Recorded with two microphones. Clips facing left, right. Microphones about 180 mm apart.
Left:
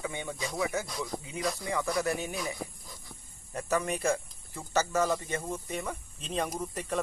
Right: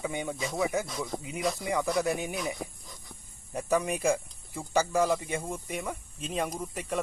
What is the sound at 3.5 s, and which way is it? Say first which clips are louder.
Speech: right 2 dB; 10° right (ahead or behind).